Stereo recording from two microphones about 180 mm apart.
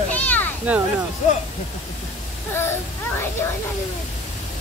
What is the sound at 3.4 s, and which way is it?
Speech, 15° left (ahead or behind).